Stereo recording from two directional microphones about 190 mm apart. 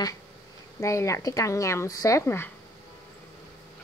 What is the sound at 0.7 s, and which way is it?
Speech, 15° left (ahead or behind).